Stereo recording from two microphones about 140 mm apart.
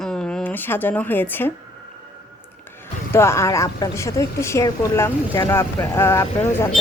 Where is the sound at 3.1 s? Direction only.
20° left (ahead or behind).